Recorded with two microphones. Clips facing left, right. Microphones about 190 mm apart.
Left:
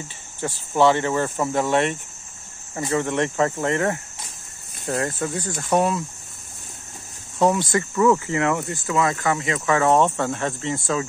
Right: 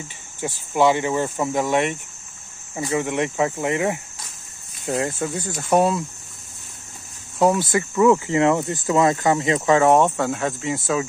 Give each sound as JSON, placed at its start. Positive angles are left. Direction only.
{"t": 0.4, "sound": "speech", "side_deg": -10}
{"t": 3.0, "sound": "speech", "side_deg": -15}
{"t": 7.9, "sound": "speech", "side_deg": -10}
{"t": 8.3, "sound": "speech", "side_deg": -25}